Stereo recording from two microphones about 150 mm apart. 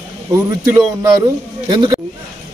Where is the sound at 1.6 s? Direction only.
30° right (ahead or behind).